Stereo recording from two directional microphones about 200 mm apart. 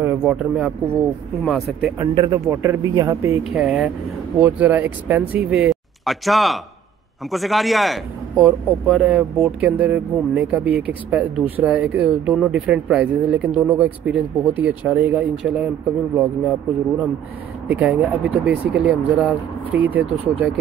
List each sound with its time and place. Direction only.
0.0 s speech: 5° right (ahead or behind)
2.0 s a man's voice: 20° right (ahead or behind)
3.4 s a man's voice: 5° right (ahead or behind)
17.6 s a man's voice: 10° right (ahead or behind)